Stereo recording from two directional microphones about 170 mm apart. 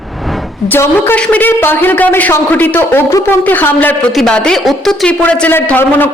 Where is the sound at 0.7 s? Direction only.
15° left (ahead or behind).